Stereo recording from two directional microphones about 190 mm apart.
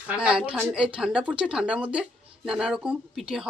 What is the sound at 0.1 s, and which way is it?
Speech, 5° right (ahead or behind).